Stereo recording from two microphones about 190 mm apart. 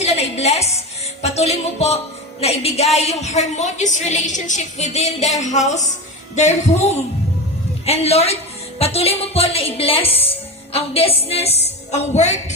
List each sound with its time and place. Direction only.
0.0 s music: 35° left (ahead or behind)
1.2 s a woman's voice: 35° left (ahead or behind)